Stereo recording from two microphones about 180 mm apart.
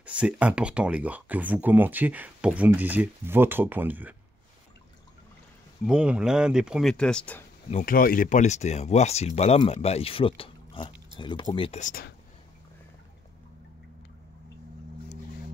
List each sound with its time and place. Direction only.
0.0 s speech: 5° right (ahead or behind)
5.9 s speech: 5° right (ahead or behind)
7.7 s speech: 50° left (ahead or behind); by 11.8 s 30° left (ahead or behind)
11.8 s speech: 55° left (ahead or behind)